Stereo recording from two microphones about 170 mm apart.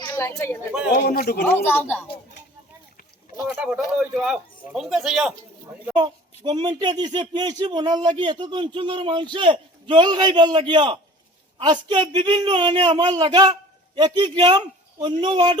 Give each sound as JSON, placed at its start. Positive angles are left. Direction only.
{"t": 0.2, "sound": "speech", "side_deg": 15}
{"t": 0.9, "sound": "a man's voice", "side_deg": 65}
{"t": 1.5, "sound": "speech", "side_deg": 10}
{"t": 3.4, "sound": "a man's voice", "side_deg": -10}
{"t": 5.9, "sound": "speech", "side_deg": -25}